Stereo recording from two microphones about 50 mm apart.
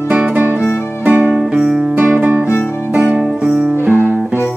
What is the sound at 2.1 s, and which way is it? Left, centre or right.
Music, right.